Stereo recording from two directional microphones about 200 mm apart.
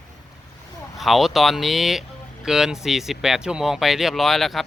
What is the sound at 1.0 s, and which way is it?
Speech, centre (ahead or behind).